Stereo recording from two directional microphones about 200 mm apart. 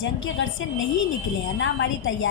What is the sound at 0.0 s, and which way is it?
A woman's voice, 70° left (ahead or behind).